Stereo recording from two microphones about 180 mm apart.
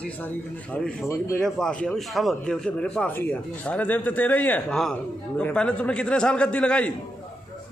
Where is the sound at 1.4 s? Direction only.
5° left (ahead or behind).